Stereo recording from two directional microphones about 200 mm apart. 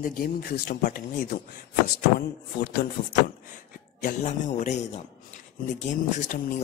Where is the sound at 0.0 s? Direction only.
50° left (ahead or behind).